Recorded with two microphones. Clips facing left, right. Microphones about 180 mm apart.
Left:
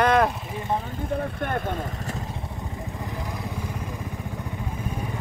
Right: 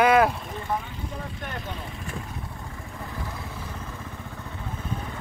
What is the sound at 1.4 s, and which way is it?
Vehicle, 55° left (ahead or behind).